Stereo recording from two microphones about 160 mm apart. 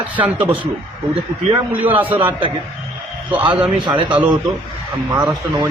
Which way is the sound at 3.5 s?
5° right (ahead or behind).